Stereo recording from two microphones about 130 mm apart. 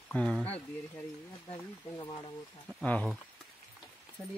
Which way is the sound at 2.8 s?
10° left (ahead or behind).